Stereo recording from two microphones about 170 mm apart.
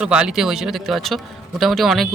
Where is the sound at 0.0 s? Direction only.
5° right (ahead or behind).